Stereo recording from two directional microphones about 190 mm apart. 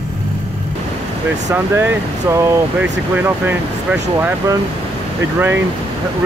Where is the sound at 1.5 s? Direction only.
15° right (ahead or behind).